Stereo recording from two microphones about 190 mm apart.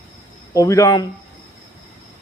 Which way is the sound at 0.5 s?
20° left (ahead or behind).